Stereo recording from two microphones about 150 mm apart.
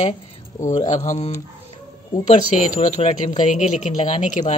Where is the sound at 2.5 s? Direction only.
50° left (ahead or behind).